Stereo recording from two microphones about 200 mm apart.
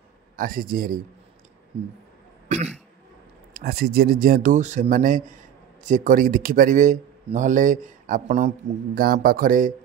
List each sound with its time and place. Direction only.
0.4 s speech: 45° right (ahead or behind)
2.4 s cough: 35° right (ahead or behind)
3.5 s a man's voice: 50° right (ahead or behind)